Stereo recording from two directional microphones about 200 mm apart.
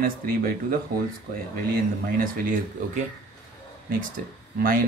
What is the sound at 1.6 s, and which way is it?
Speech, 45° right (ahead or behind).